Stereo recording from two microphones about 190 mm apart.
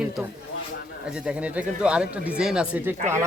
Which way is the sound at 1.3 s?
5° right (ahead or behind).